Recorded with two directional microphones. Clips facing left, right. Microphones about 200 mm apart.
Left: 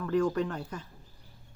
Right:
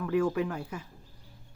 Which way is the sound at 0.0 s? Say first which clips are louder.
Even; 5° right (ahead or behind).